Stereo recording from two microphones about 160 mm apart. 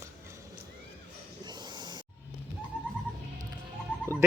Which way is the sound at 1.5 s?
25° right (ahead or behind).